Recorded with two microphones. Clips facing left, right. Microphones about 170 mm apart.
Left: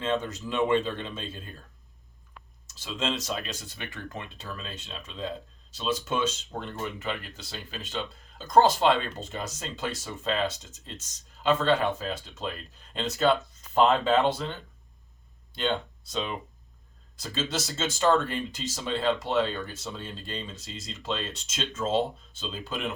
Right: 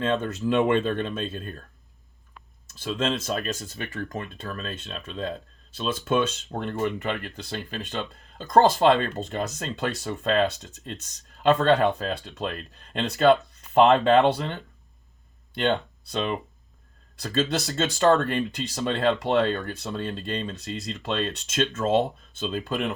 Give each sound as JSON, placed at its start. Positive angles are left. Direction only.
{"t": 0.0, "sound": "speech", "side_deg": -55}
{"t": 2.6, "sound": "speech", "side_deg": -55}